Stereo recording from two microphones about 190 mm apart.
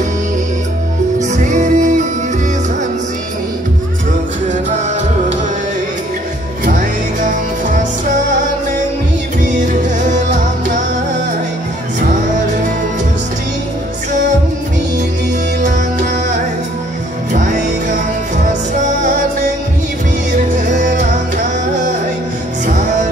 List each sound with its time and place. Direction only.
1.3 s music: 40° right (ahead or behind)
6.6 s music: 45° right (ahead or behind)
9.4 s music: 40° right (ahead or behind)
15.6 s music: 45° right (ahead or behind)
20.5 s music: 40° right (ahead or behind)